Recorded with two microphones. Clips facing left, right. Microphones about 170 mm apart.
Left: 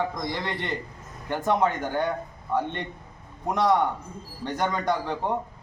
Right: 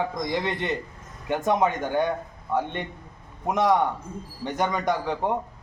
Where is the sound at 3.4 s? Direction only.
20° right (ahead or behind).